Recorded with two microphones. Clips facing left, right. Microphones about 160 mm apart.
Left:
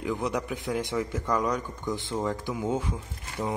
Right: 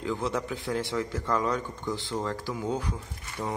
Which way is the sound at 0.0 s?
15° left (ahead or behind).